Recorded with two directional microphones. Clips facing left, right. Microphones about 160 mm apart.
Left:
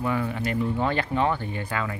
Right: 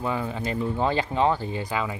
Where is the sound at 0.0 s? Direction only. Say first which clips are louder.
Left 1 dB; 20° right (ahead or behind).